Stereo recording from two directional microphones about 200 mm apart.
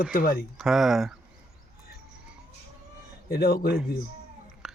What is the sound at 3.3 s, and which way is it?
Speech, 50° left (ahead or behind).